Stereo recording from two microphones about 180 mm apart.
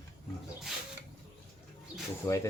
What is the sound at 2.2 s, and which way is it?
Speech, 15° left (ahead or behind).